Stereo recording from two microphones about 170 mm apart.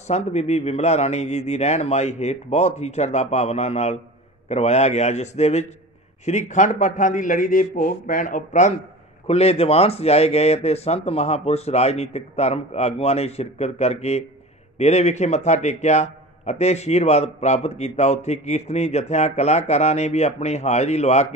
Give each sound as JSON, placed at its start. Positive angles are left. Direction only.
{"t": 0.1, "sound": "a man's voice", "side_deg": 40}
{"t": 9.3, "sound": "a man's voice", "side_deg": 35}